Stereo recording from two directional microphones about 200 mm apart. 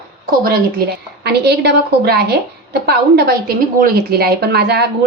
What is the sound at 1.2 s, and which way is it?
A woman's voice, 55° right (ahead or behind).